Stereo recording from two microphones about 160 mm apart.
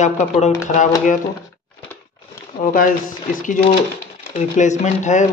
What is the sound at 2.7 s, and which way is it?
Speech, 55° left (ahead or behind).